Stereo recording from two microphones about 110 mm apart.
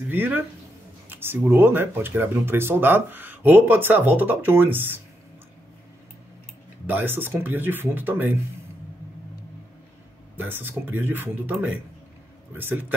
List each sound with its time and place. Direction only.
0.1 s speech: 15° right (ahead or behind)
6.9 s speech: 15° right (ahead or behind)
10.3 s speech: 20° right (ahead or behind)